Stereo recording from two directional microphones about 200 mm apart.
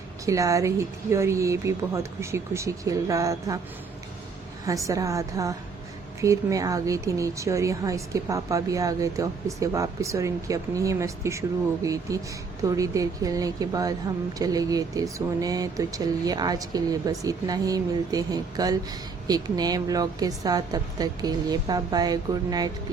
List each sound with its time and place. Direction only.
0.3 s a woman's voice: 15° right (ahead or behind)
4.6 s a woman's voice: 15° right (ahead or behind)